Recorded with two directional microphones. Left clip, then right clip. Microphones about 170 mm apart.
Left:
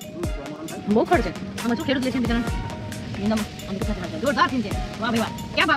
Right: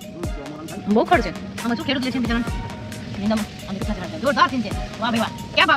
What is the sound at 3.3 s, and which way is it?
Speech, centre (ahead or behind).